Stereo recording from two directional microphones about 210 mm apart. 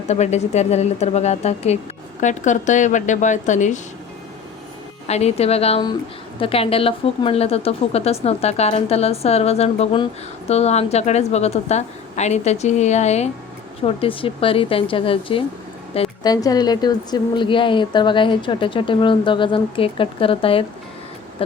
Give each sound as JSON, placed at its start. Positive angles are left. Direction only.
{"t": 0.1, "sound": "a woman's voice", "side_deg": 30}
{"t": 5.0, "sound": "a woman's voice", "side_deg": 30}